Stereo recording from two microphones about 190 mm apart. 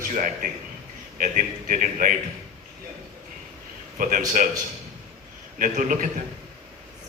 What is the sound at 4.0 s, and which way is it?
Speech, 40° right (ahead or behind).